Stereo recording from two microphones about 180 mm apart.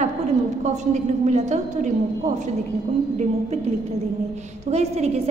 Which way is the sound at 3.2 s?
40° right (ahead or behind).